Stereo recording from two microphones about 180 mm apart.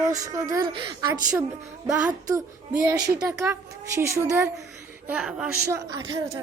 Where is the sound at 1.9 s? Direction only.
5° right (ahead or behind).